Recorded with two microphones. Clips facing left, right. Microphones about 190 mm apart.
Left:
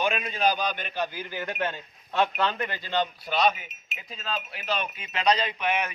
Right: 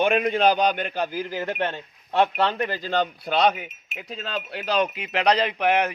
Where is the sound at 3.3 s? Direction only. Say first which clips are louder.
Right 5 dB; 60° right (ahead or behind).